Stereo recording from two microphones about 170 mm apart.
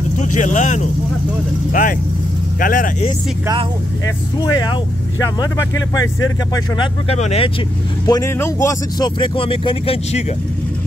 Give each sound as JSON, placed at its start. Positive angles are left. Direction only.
{"t": 0.2, "sound": "speech", "side_deg": 45}
{"t": 4.4, "sound": "speech", "side_deg": 25}
{"t": 5.9, "sound": "speech", "side_deg": 20}
{"t": 7.1, "sound": "speech", "side_deg": 40}
{"t": 8.1, "sound": "speech", "side_deg": 15}
{"t": 9.2, "sound": "speech", "side_deg": 30}